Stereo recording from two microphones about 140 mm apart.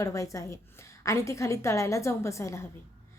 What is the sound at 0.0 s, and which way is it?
A woman's voice, 20° left (ahead or behind).